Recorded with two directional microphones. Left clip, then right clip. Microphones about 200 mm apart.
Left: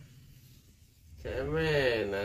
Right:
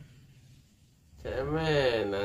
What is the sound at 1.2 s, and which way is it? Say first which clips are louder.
Speech: right 1 dB; 5° right (ahead or behind).